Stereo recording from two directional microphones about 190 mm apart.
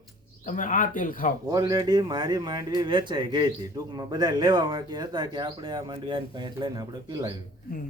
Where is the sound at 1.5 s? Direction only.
20° right (ahead or behind).